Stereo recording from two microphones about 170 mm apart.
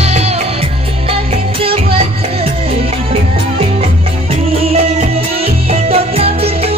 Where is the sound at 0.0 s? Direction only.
40° right (ahead or behind).